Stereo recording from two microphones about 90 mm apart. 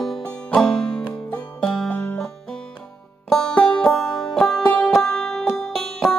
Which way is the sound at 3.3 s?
10° left (ahead or behind).